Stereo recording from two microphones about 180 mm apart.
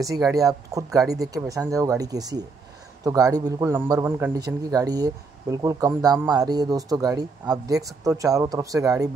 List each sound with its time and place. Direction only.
0.4 s speech: 20° right (ahead or behind)